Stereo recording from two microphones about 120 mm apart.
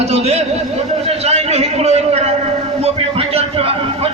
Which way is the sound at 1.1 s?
60° right (ahead or behind).